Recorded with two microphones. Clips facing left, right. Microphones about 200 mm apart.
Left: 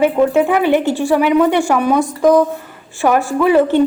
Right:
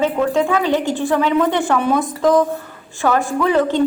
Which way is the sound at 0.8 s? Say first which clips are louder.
Left 3 dB; 20° right (ahead or behind).